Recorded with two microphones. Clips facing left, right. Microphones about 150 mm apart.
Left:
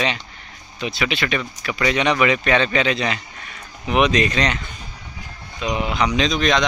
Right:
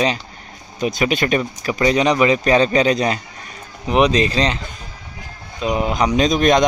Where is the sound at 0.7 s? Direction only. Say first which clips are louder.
Right 5 dB; 45° right (ahead or behind).